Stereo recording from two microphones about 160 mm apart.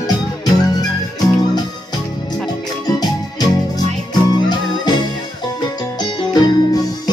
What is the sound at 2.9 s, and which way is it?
Music, 25° left (ahead or behind).